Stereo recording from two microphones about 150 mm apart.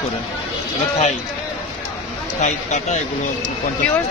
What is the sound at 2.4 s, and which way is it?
Speech, 50° left (ahead or behind).